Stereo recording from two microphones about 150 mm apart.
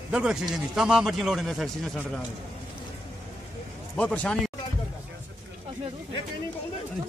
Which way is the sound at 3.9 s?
10° left (ahead or behind).